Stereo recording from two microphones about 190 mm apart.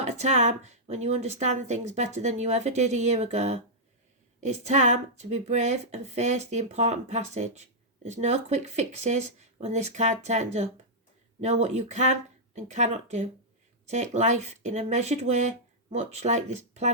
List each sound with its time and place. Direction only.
0.0 s a woman's voice: 35° right (ahead or behind)